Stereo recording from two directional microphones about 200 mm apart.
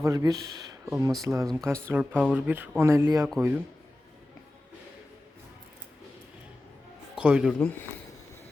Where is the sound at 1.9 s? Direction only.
10° right (ahead or behind).